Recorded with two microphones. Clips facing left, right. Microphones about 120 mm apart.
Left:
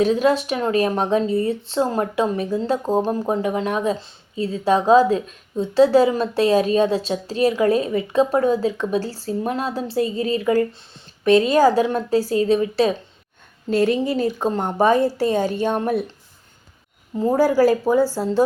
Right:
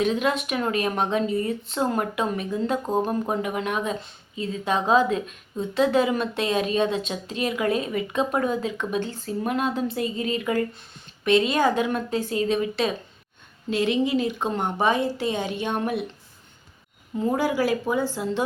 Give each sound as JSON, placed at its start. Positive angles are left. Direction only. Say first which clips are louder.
{"t": 0.0, "sound": "a woman's voice", "louder": "left 6 dB", "side_deg": 35}
{"t": 17.2, "sound": "a woman's voice", "louder": "left 7 dB", "side_deg": 35}